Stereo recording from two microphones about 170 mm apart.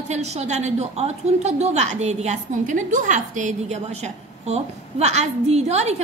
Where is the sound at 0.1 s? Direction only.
40° right (ahead or behind).